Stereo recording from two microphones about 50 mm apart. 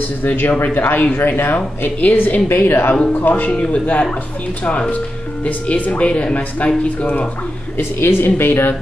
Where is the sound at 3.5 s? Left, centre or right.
Left.